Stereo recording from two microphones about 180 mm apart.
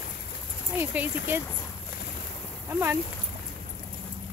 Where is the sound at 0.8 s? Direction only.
10° right (ahead or behind).